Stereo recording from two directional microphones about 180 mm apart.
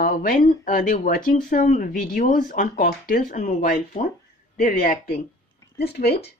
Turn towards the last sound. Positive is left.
turn(degrees=65)  # may be behind; listen again after turning